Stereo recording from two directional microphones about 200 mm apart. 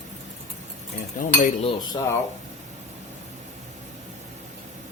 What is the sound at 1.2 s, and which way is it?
Cutlery, 40° left (ahead or behind).